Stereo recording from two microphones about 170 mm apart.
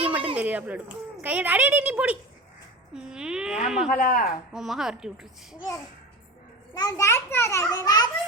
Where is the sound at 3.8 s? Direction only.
50° left (ahead or behind).